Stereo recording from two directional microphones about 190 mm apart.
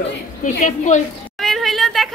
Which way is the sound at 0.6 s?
40° left (ahead or behind).